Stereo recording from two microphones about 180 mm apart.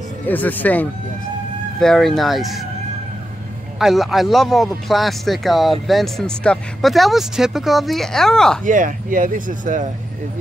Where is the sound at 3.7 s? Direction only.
Centre (ahead or behind).